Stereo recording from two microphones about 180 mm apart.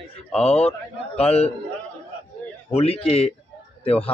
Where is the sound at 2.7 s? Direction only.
35° left (ahead or behind).